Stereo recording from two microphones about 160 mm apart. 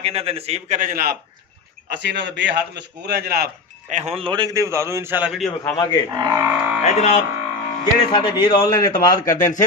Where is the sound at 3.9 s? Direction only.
45° right (ahead or behind); by 5.7 s centre (ahead or behind).